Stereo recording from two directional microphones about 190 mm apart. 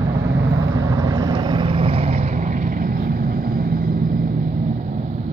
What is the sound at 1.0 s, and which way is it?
Vehicle, 20° right (ahead or behind).